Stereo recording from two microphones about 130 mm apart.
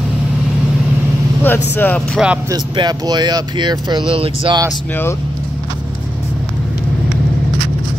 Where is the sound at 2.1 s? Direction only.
5° right (ahead or behind).